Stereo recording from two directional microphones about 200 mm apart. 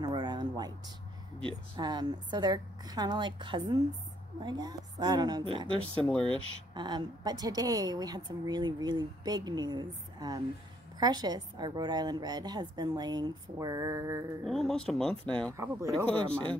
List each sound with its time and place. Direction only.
0.0 s a sound: 20° right (ahead or behind)
1.4 s speech: 20° right (ahead or behind)
5.8 s speech: 5° left (ahead or behind)
6.2 s speech: 25° right (ahead or behind)
14.4 s speech: centre (ahead or behind)
15.5 s speech: 15° right (ahead or behind)